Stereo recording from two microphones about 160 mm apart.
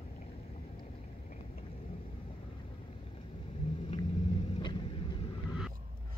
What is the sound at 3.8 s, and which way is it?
Vehicle, 40° left (ahead or behind).